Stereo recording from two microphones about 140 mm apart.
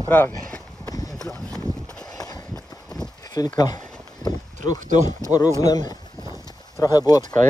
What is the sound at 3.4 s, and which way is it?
Speech, 25° left (ahead or behind).